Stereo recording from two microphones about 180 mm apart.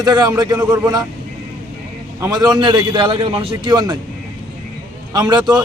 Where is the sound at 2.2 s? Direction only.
20° right (ahead or behind).